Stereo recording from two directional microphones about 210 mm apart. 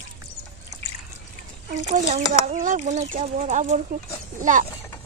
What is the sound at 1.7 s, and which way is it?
Speech, 35° right (ahead or behind).